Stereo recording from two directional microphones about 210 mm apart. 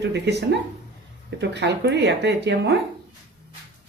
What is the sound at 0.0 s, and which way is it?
Speech, 55° right (ahead or behind).